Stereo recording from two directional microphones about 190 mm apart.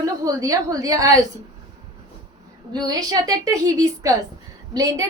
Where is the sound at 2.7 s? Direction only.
20° right (ahead or behind).